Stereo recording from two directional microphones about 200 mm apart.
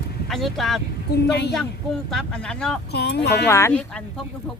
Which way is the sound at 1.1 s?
55° left (ahead or behind).